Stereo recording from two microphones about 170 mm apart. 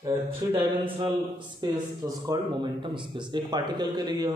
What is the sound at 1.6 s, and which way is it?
Speech, 20° right (ahead or behind).